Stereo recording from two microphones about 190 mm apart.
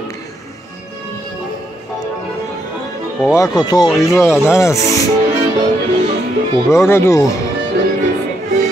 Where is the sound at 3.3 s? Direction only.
20° left (ahead or behind).